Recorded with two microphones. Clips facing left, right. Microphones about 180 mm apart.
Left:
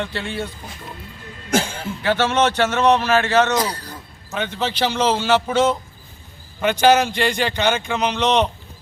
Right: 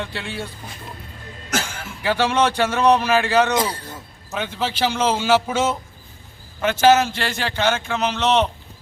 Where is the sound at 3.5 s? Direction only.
25° right (ahead or behind).